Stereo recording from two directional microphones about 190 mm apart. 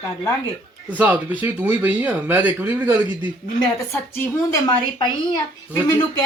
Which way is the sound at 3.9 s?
15° left (ahead or behind).